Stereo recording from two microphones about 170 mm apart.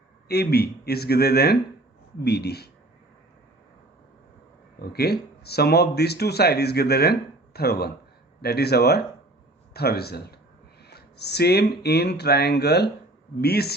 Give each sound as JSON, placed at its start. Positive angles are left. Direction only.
{"t": 0.3, "sound": "speech", "side_deg": 70}
{"t": 4.8, "sound": "speech", "side_deg": 70}